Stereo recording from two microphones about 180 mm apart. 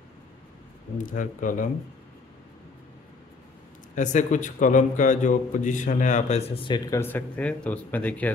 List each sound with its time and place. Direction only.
0.9 s a man's voice: 45° left (ahead or behind)
3.9 s a man's voice: 40° left (ahead or behind); by 7.0 s 25° left (ahead or behind)
7.0 s speech: 10° left (ahead or behind)